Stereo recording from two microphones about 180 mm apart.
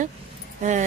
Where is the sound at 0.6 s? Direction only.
40° right (ahead or behind).